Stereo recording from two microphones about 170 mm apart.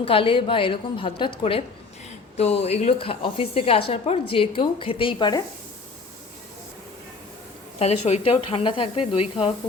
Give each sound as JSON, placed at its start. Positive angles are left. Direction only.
{"t": 0.0, "sound": "a woman's voice", "side_deg": 30}
{"t": 7.8, "sound": "a woman's voice", "side_deg": 40}